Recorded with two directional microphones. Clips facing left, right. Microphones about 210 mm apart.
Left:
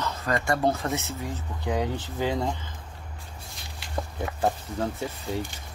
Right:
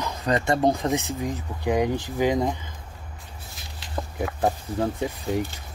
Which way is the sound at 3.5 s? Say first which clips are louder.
Right 1 dB; centre (ahead or behind).